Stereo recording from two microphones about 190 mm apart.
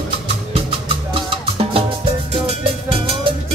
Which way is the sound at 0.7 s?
30° right (ahead or behind).